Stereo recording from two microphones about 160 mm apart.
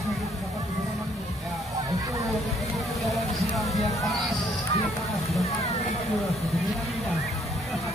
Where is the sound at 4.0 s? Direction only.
Centre (ahead or behind).